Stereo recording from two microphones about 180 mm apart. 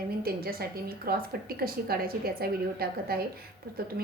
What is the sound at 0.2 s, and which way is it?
A woman's voice, 55° right (ahead or behind).